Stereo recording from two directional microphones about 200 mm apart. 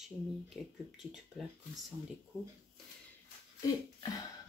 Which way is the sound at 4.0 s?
20° left (ahead or behind).